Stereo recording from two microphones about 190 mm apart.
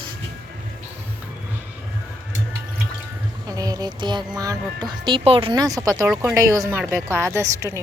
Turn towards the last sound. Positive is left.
turn(degrees=-15)  # may be behind; listen again after turning